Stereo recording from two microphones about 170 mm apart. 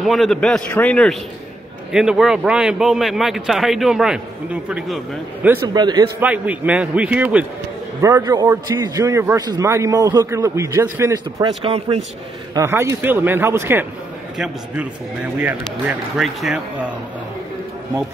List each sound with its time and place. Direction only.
0.0 s a man's voice: centre (ahead or behind)
5.7 s a man's voice: 25° right (ahead or behind)
6.1 s a man's voice: 10° right (ahead or behind)
8.0 s a man's voice: 20° right (ahead or behind)
11.4 s speech: 35° right (ahead or behind)
12.5 s a man's voice: 15° right (ahead or behind)
15.4 s a man's voice: 5° right (ahead or behind)